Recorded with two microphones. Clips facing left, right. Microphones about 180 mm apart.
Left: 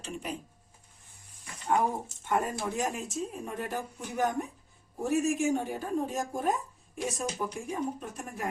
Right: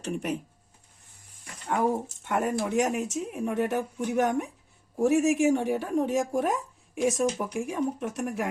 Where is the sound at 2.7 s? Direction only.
75° right (ahead or behind).